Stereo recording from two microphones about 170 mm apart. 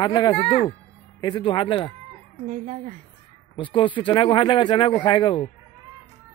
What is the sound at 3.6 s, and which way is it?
Speech, 30° left (ahead or behind).